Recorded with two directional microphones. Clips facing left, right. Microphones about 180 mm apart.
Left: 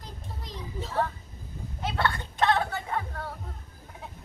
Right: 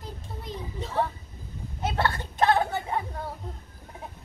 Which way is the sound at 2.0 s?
20° right (ahead or behind).